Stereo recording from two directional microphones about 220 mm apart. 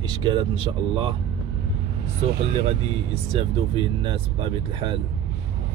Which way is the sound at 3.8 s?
25° right (ahead or behind).